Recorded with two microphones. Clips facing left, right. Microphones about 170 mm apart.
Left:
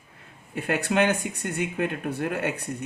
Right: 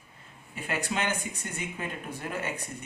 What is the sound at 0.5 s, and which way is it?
Speech, 65° left (ahead or behind).